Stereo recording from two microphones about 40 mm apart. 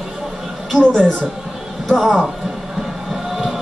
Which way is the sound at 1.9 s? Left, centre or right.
Centre.